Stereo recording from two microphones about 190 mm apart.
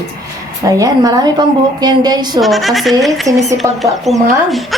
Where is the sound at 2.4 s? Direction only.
Centre (ahead or behind).